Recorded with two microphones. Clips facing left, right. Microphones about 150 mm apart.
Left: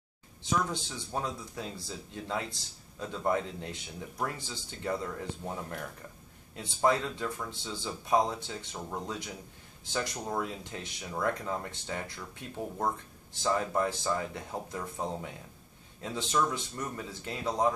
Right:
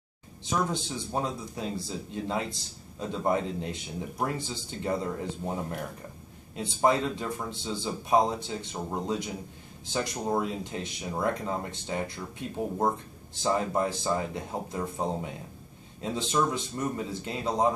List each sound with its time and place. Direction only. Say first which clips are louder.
0.7 s speech: right 5 dB; 20° right (ahead or behind)
13.4 s speech: right 2 dB; 20° right (ahead or behind)